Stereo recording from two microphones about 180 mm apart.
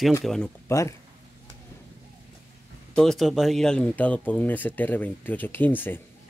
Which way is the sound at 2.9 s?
5° left (ahead or behind).